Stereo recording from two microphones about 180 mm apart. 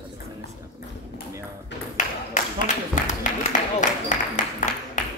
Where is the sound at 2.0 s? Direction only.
45° left (ahead or behind).